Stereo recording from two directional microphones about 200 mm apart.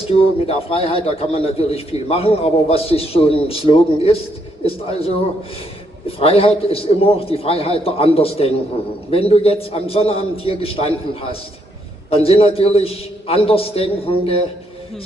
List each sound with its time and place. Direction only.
0.1 s a man's voice: 30° left (ahead or behind)